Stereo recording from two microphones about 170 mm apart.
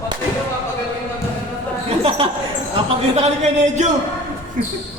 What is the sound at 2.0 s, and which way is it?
Speech, 30° right (ahead or behind).